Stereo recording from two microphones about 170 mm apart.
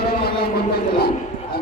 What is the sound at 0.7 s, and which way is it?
Speech, 70° left (ahead or behind).